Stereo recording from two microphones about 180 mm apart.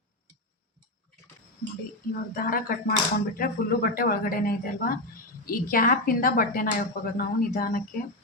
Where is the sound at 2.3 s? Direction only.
55° left (ahead or behind).